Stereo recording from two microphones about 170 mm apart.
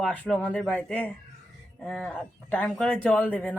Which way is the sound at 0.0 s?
5° left (ahead or behind).